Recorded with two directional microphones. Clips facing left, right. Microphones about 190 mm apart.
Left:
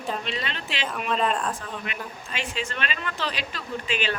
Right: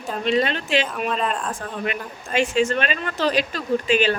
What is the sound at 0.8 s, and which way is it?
Speech, centre (ahead or behind).